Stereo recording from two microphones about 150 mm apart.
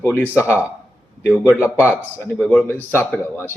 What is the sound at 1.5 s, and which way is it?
Speech, 15° left (ahead or behind).